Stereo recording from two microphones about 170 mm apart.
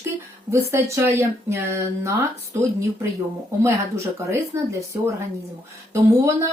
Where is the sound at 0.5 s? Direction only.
15° right (ahead or behind).